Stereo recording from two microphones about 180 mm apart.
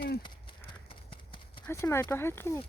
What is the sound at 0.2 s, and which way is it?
Horse, 25° left (ahead or behind).